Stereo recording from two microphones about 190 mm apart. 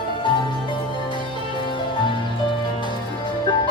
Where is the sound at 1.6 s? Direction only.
25° left (ahead or behind).